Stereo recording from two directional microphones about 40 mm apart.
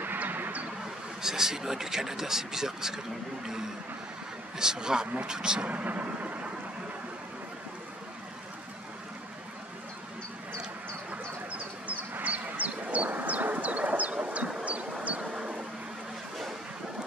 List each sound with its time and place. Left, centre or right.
0.0 s a sound: right
1.2 s speech: centre
4.6 s speech: centre
5.7 s vehicle: right
11.1 s a sound: right
14.6 s vehicle: right